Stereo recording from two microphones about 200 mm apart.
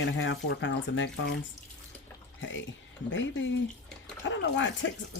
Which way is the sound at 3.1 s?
65° left (ahead or behind).